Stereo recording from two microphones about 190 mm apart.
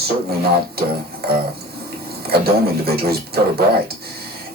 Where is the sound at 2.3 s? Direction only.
55° right (ahead or behind).